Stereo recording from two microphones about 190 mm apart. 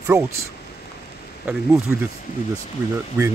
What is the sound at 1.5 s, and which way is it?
Speech, 5° right (ahead or behind).